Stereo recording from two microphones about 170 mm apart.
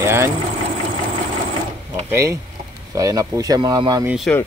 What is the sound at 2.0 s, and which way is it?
Speech, 15° right (ahead or behind).